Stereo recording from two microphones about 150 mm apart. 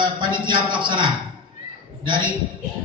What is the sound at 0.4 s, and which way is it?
Speech, 30° right (ahead or behind).